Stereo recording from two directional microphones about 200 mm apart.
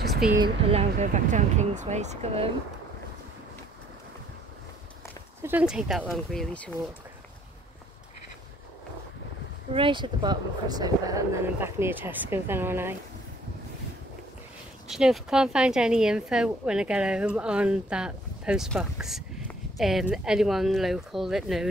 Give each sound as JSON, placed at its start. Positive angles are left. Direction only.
{"t": 0.4, "sound": "speech", "side_deg": -30}
{"t": 5.4, "sound": "speech", "side_deg": -10}
{"t": 9.8, "sound": "speech", "side_deg": -25}
{"t": 14.9, "sound": "speech", "side_deg": 0}